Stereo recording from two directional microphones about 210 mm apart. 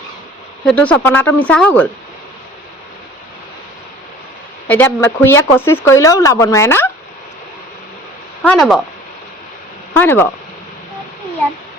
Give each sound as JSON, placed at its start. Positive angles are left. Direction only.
{"t": 0.6, "sound": "speech", "side_deg": 5}
{"t": 4.7, "sound": "speech", "side_deg": 10}
{"t": 8.4, "sound": "speech", "side_deg": 0}
{"t": 10.0, "sound": "speech", "side_deg": 10}